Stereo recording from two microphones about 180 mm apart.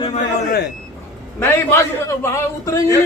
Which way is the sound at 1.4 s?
15° left (ahead or behind).